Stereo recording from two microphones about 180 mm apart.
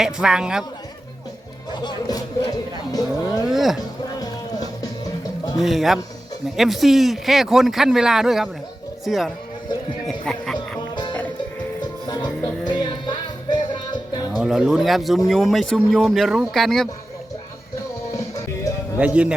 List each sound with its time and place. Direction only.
0.0 s speech: 5° right (ahead or behind)
1.7 s speech: 25° left (ahead or behind)
3.4 s speech: centre (ahead or behind)
3.8 s music: 20° left (ahead or behind)
5.5 s speech: centre (ahead or behind)
10.8 s music: 25° left (ahead or behind)
14.3 s speech: centre (ahead or behind)
18.9 s a man's voice: 5° right (ahead or behind)